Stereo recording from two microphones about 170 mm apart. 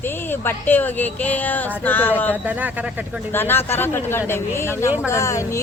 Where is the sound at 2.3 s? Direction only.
10° right (ahead or behind).